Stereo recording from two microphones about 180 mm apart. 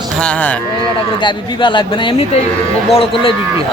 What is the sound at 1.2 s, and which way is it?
Speech, 25° left (ahead or behind).